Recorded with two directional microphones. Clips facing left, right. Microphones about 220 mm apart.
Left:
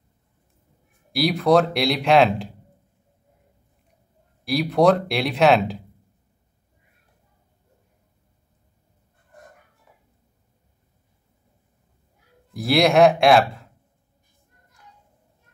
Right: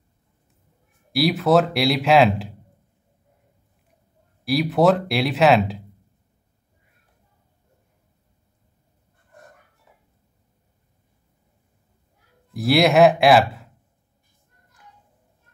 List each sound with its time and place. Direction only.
1.1 s speech: centre (ahead or behind)
4.5 s speech: centre (ahead or behind)
12.5 s speech: centre (ahead or behind)